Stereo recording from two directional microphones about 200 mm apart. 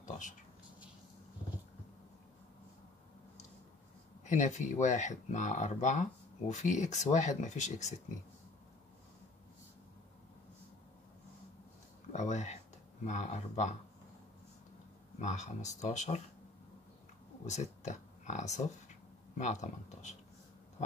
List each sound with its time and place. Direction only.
0.0 s a sound: 40° left (ahead or behind)
4.2 s speech: 35° left (ahead or behind)
12.1 s a sound: 35° left (ahead or behind)
13.0 s speech: 35° left (ahead or behind)
15.1 s speech: 35° left (ahead or behind)
17.5 s speech: 35° left (ahead or behind)